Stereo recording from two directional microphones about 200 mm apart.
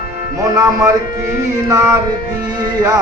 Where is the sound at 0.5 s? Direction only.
15° right (ahead or behind).